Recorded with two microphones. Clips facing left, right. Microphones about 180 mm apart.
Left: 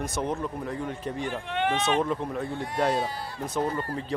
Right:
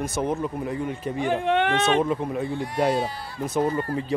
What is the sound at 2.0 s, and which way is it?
Speech, 10° right (ahead or behind).